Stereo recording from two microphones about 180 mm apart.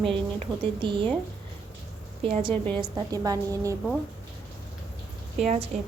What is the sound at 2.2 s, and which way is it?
A woman's voice, 30° right (ahead or behind).